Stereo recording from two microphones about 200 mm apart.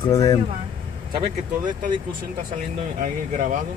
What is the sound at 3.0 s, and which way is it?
Speech, 45° right (ahead or behind).